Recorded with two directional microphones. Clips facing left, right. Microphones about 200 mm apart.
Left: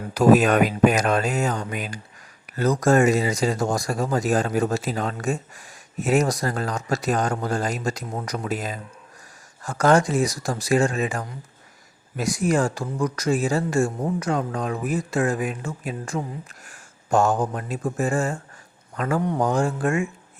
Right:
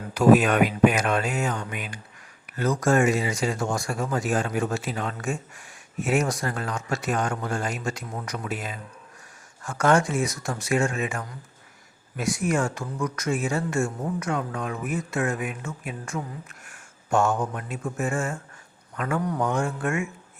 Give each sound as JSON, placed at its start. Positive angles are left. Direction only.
{"t": 0.1, "sound": "speech", "side_deg": 40}